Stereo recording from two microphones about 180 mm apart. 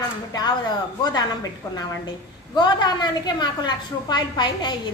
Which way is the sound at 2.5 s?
25° left (ahead or behind).